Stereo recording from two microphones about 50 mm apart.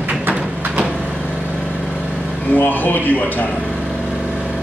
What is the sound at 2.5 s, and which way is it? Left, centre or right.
Speech, left.